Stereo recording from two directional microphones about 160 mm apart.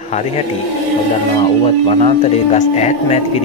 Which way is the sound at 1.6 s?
40° left (ahead or behind).